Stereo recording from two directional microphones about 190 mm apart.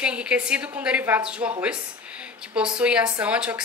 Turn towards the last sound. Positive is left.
turn(degrees=-5)  # may be behind; listen again after turning